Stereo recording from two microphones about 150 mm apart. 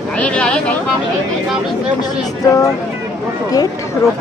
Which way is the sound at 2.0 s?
25° left (ahead or behind).